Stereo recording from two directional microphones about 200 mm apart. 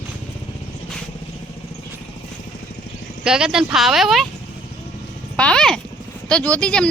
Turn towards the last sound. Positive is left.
turn(degrees=5)  # may be behind; listen again after turning